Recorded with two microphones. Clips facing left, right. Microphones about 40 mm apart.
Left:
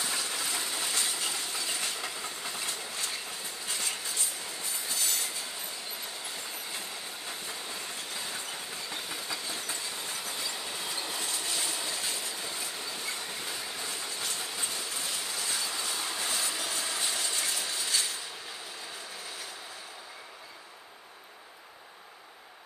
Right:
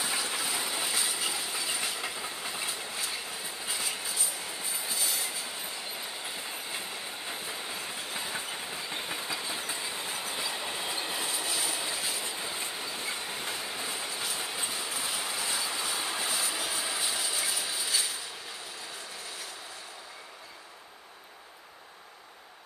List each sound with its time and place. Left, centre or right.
0.0 s train: centre
12.3 s train: centre